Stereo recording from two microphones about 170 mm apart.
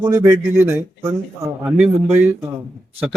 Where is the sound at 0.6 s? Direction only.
15° right (ahead or behind).